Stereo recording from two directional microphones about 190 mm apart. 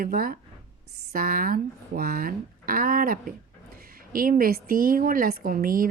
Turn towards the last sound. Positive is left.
turn(degrees=-45)  # may be behind; listen again after turning